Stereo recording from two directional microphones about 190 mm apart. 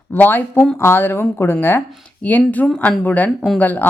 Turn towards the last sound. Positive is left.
turn(degrees=10)  # may be behind; listen again after turning